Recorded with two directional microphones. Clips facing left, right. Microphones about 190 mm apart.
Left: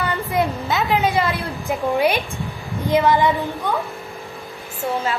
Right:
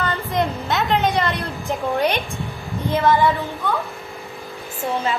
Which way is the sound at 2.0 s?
10° left (ahead or behind).